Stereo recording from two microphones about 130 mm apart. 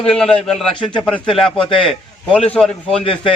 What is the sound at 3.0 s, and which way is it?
Speech, 45° left (ahead or behind).